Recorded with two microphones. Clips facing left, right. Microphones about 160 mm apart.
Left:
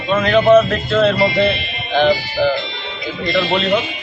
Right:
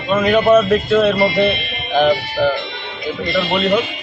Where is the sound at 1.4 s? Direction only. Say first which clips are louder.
Even; 55° right (ahead or behind).